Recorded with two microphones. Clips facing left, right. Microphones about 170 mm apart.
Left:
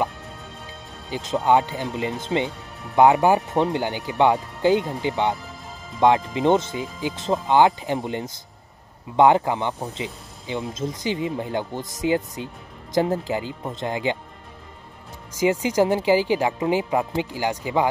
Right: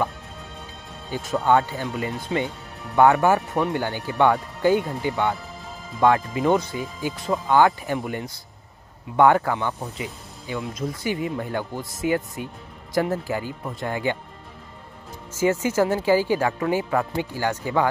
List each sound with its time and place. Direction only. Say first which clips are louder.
1.1 s speech: left 1 dB; 15° left (ahead or behind)
15.3 s speech: left 1 dB; 15° left (ahead or behind)